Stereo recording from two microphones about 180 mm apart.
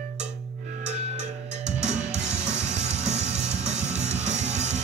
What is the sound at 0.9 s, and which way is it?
Music, 40° right (ahead or behind).